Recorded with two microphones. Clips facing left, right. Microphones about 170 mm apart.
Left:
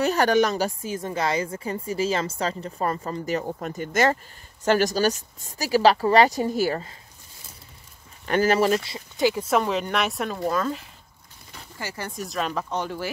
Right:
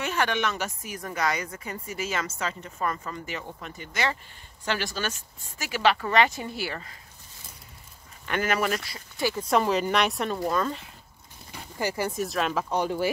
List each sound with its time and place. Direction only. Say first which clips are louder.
0.0 s a woman's voice: left 7 dB; 40° left (ahead or behind)
8.3 s speech: left 6 dB; 30° left (ahead or behind)
9.4 s speech: even; centre (ahead or behind)
11.8 s speech: right 6 dB; 15° right (ahead or behind)
12.2 s speech: left 3 dB; centre (ahead or behind)
12.6 s speech: right 3 dB; 15° right (ahead or behind)